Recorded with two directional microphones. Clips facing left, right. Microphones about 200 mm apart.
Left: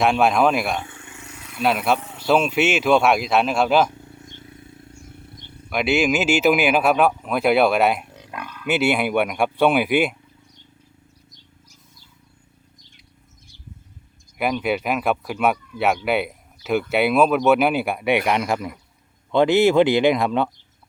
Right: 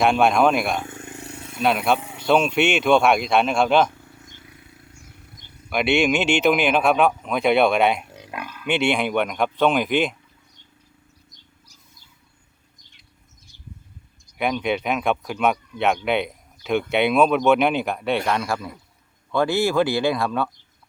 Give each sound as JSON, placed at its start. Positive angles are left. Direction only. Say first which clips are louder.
{"t": 0.0, "sound": "speech", "louder": "even", "side_deg": 0}
{"t": 0.9, "sound": "a sound", "louder": "right 6 dB", "side_deg": -40}
{"t": 1.5, "sound": "speech", "louder": "even", "side_deg": 0}
{"t": 3.9, "sound": "wild animals", "louder": "left 5 dB", "side_deg": 25}
{"t": 5.2, "sound": "a sound", "louder": "left 6 dB", "side_deg": 30}
{"t": 5.7, "sound": "speech", "louder": "even", "side_deg": 0}
{"t": 14.3, "sound": "speech", "louder": "left 1 dB", "side_deg": 5}